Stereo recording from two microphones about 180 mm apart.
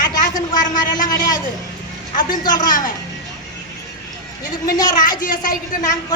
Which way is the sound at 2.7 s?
45° left (ahead or behind).